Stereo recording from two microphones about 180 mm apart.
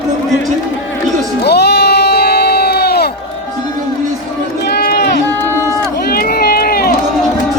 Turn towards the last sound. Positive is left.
turn(degrees=55)  # may be behind; listen again after turning